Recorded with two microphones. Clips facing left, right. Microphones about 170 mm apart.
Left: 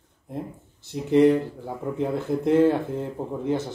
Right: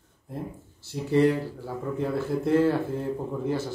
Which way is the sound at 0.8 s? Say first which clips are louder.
Left 4 dB; 20° left (ahead or behind).